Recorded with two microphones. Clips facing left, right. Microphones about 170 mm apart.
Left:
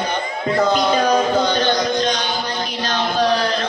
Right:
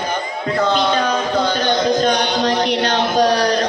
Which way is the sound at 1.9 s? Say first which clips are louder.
Right 4 dB; 55° right (ahead or behind).